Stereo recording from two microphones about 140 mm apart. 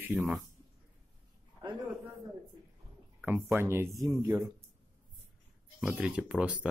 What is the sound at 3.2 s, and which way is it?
Speech, 15° right (ahead or behind).